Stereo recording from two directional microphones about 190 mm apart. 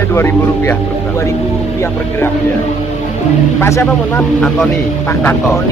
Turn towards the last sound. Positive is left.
turn(degrees=15)  # may be behind; listen again after turning